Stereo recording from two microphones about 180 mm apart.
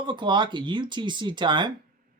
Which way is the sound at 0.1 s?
25° right (ahead or behind).